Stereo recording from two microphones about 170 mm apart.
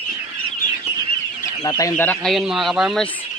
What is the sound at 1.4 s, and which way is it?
Chicken, 20° left (ahead or behind).